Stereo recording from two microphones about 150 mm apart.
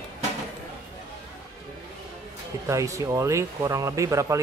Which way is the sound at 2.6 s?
20° right (ahead or behind).